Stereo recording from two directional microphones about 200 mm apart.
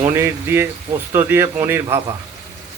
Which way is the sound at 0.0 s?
15° right (ahead or behind).